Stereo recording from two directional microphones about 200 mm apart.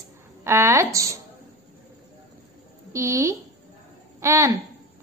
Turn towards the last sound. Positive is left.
turn(degrees=-15)  # may be behind; listen again after turning